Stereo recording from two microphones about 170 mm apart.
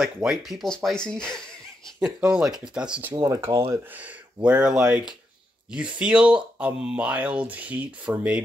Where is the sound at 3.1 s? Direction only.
20° right (ahead or behind).